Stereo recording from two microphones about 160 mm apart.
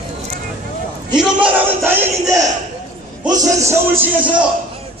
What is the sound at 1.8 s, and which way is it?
Music, 15° right (ahead or behind).